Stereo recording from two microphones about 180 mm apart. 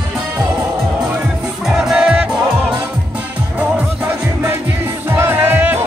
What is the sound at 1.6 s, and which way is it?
Music, centre (ahead or behind).